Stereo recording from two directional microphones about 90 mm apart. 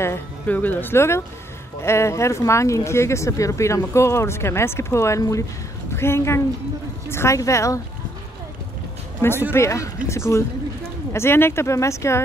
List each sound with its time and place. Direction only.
0.0 s speech: 25° left (ahead or behind)
9.5 s speech: 35° left (ahead or behind)